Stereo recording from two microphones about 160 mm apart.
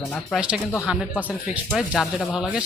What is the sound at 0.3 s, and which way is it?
Speech, 5° right (ahead or behind).